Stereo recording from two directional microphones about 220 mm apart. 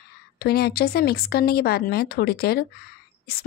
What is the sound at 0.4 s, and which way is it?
A woman's voice, 45° left (ahead or behind).